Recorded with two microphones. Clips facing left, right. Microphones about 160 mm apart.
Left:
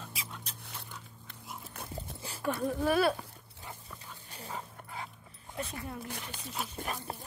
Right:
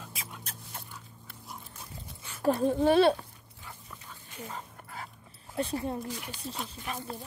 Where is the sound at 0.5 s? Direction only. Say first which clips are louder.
Right 3 dB; 50° right (ahead or behind).